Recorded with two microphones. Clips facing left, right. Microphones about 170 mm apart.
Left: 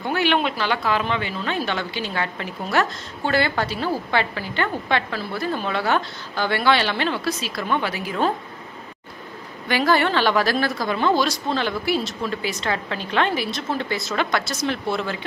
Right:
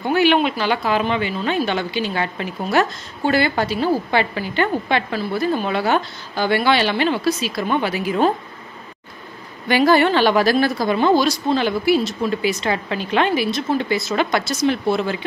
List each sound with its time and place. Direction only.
0.1 s speech: 10° right (ahead or behind)
9.7 s speech: 15° right (ahead or behind)